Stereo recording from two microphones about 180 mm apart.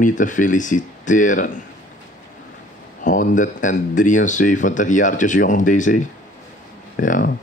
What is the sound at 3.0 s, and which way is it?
A man's voice, 45° left (ahead or behind).